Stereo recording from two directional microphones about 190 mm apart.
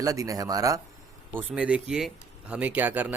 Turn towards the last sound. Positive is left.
turn(degrees=-10)  # may be behind; listen again after turning